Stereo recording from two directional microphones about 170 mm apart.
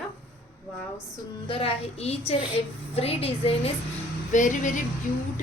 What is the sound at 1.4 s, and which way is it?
A woman's voice, 35° left (ahead or behind).